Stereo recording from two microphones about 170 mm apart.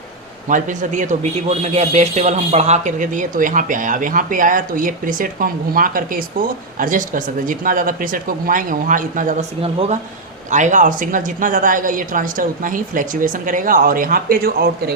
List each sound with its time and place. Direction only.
0.4 s a man's voice: 50° right (ahead or behind)
10.5 s a man's voice: 45° right (ahead or behind); by 14.9 s 65° right (ahead or behind)